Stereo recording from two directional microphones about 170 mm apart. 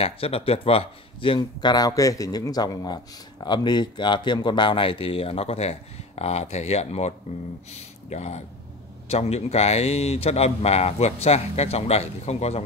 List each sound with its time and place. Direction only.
0.0 s speech: 35° left (ahead or behind)